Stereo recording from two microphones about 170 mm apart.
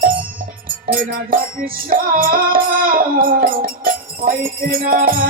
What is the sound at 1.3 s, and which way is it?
Music, 55° right (ahead or behind).